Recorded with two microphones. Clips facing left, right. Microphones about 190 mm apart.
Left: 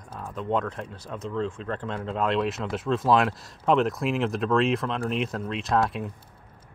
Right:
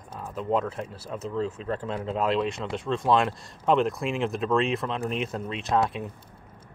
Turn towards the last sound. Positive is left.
turn(degrees=0)  # may be behind; listen again after turning